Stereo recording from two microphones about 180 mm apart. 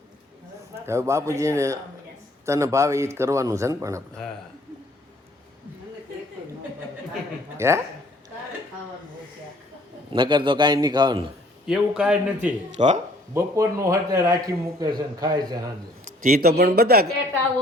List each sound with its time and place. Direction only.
0.9 s speech: 15° right (ahead or behind)
7.5 s speech: 15° right (ahead or behind)
10.1 s a man's voice: 25° right (ahead or behind)
11.6 s a man's voice: 5° right (ahead or behind)
12.7 s speech: 40° right (ahead or behind)
13.3 s a man's voice: 15° right (ahead or behind)
16.0 s a man's voice: 50° right (ahead or behind)